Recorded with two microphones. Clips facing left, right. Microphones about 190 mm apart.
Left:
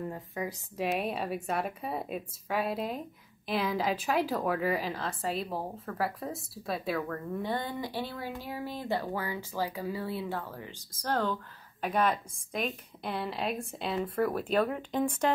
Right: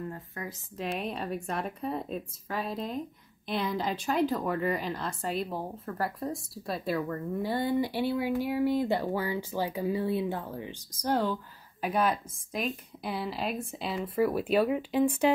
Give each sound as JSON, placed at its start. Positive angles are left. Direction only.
{"t": 0.1, "sound": "a woman's voice", "side_deg": 15}